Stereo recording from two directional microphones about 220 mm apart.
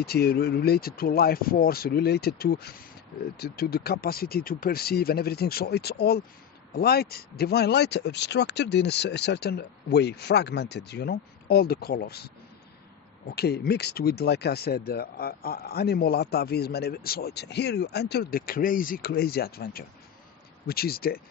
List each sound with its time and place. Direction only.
0.0 s speech: 45° left (ahead or behind)
13.3 s speech: 45° left (ahead or behind)